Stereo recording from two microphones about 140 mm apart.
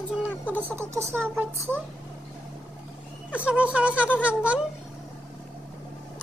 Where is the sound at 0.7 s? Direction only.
20° right (ahead or behind).